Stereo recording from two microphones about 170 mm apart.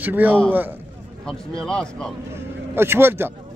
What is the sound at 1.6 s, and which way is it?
Speech, 5° left (ahead or behind).